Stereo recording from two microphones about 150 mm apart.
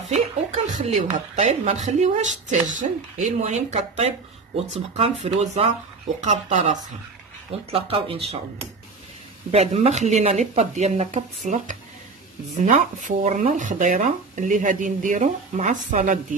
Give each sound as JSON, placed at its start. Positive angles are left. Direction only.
{"t": 0.1, "sound": "speech", "side_deg": -55}
{"t": 7.7, "sound": "speech", "side_deg": -35}
{"t": 9.5, "sound": "speech", "side_deg": -45}